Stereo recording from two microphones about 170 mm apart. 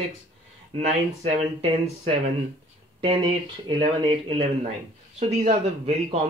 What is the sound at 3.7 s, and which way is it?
A man's voice, 30° right (ahead or behind).